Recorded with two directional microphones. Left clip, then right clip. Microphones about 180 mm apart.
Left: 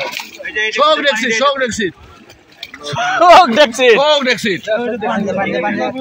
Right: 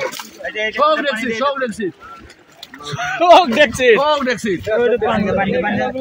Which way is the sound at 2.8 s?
Centre (ahead or behind).